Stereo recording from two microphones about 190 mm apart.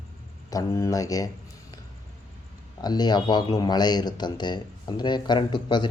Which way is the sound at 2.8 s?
20° left (ahead or behind).